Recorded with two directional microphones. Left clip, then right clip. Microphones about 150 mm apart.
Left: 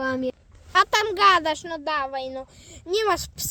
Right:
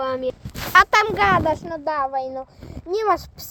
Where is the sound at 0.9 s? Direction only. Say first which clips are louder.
Right 1 dB; 25° left (ahead or behind).